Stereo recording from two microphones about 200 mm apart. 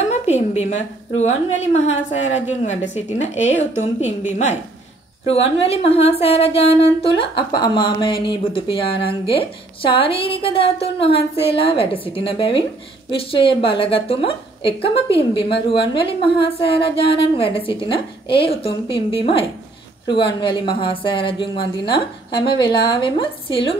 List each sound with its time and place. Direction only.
0.1 s a woman's voice: 35° left (ahead or behind)
5.6 s speech: 30° left (ahead or behind)